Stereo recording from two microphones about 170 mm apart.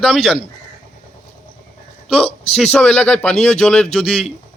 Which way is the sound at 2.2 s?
35° left (ahead or behind).